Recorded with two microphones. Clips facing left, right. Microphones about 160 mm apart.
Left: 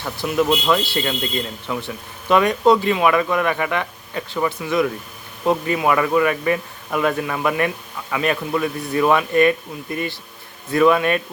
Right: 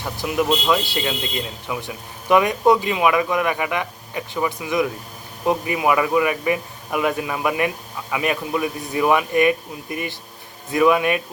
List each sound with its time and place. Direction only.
0.0 s speech: 15° right (ahead or behind)